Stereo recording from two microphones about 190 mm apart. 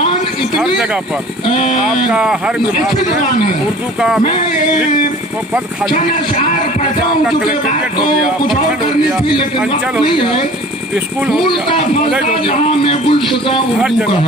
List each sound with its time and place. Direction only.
2.0 s speech: 5° right (ahead or behind)
10.0 s speech: 25° left (ahead or behind)
12.4 s speech: 30° left (ahead or behind)